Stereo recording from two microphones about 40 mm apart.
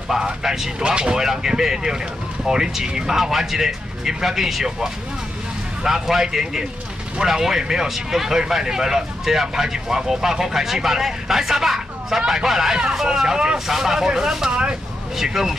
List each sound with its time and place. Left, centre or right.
0.2 s speech: centre